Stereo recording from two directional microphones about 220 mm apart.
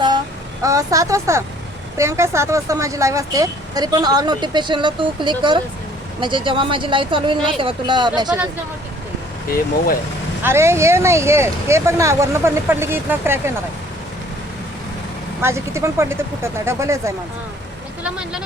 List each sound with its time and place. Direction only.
0.6 s speech: 15° right (ahead or behind)
9.5 s speech: 40° left (ahead or behind)
10.4 s speech: 10° right (ahead or behind)
15.4 s speech: 10° right (ahead or behind)